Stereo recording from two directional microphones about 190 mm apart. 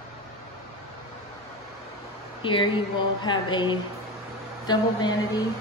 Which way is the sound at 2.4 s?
25° left (ahead or behind).